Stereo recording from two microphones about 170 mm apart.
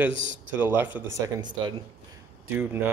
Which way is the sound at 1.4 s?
25° right (ahead or behind).